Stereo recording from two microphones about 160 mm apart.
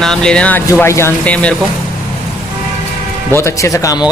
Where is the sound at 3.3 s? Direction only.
20° left (ahead or behind).